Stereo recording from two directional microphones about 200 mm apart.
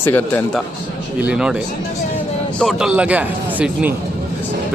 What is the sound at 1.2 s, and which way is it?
Speech, 5° right (ahead or behind).